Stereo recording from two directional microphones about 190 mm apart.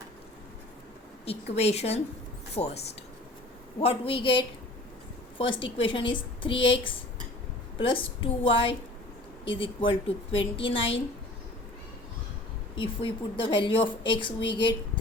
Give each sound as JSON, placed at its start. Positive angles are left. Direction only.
{"t": 1.5, "sound": "speech", "side_deg": 35}
{"t": 3.8, "sound": "a woman's voice", "side_deg": 30}
{"t": 12.7, "sound": "a woman's voice", "side_deg": 25}